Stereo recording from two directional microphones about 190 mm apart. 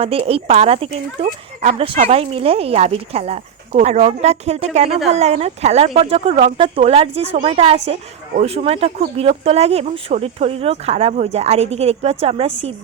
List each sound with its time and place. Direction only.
0.0 s speech: 30° right (ahead or behind)